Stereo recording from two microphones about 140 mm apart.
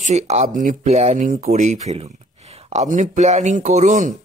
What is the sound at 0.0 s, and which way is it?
Speech, 55° right (ahead or behind).